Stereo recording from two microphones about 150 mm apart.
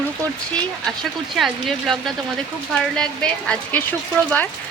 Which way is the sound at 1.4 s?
Centre (ahead or behind).